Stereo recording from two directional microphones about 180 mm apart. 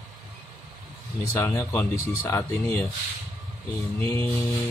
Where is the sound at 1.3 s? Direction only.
15° left (ahead or behind).